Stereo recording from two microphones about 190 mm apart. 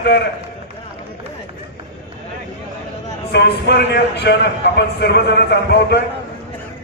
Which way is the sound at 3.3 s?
60° left (ahead or behind).